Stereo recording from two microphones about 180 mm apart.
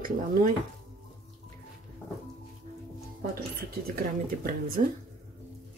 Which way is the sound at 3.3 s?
55° right (ahead or behind).